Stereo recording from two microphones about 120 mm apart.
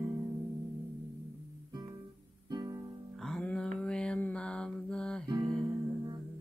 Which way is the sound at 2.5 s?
35° right (ahead or behind).